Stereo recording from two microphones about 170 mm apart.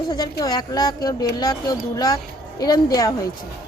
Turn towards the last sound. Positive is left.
turn(degrees=20)  # may be behind; listen again after turning